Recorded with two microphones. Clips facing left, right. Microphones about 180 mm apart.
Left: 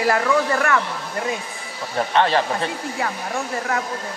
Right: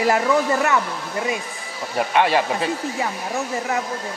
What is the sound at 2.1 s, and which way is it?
Speech, 10° right (ahead or behind).